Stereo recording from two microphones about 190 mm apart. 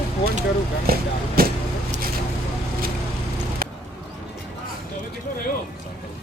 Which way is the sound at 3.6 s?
50° right (ahead or behind).